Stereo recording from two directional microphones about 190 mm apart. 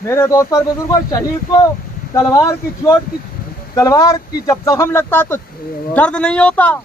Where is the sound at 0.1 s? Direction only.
15° left (ahead or behind).